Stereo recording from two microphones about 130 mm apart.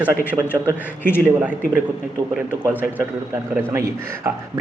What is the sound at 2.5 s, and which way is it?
Speech, 15° left (ahead or behind).